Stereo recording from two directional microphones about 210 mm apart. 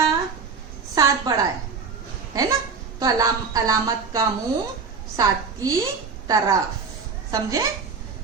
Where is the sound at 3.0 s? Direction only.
15° right (ahead or behind).